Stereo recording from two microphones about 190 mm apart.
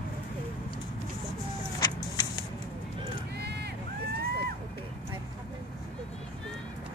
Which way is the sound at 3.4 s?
60° right (ahead or behind).